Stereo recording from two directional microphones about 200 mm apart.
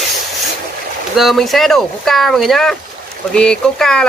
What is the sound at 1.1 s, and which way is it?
Speech, centre (ahead or behind).